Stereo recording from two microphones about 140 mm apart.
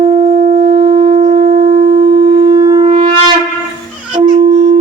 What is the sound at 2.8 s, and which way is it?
Shofar, 45° right (ahead or behind).